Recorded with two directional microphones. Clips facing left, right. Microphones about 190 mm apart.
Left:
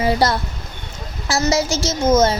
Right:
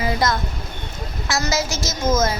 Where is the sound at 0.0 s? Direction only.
30° left (ahead or behind).